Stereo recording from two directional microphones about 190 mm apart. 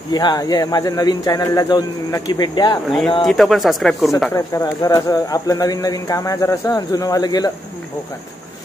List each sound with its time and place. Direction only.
0.1 s speech: 20° left (ahead or behind)
3.3 s speech: centre (ahead or behind)
4.3 s speech: 15° left (ahead or behind)